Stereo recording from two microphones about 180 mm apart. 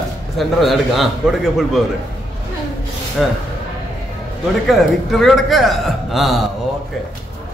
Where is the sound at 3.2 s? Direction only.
Centre (ahead or behind).